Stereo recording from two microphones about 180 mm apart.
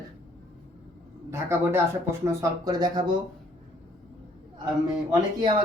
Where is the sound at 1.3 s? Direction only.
15° right (ahead or behind).